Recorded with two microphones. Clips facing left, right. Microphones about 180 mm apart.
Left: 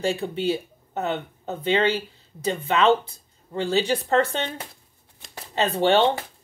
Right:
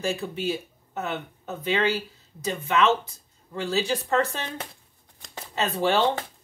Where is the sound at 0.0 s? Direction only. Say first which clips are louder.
Left 4 dB; 30° left (ahead or behind).